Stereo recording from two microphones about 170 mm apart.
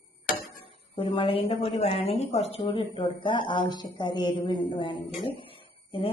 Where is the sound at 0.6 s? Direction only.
35° left (ahead or behind).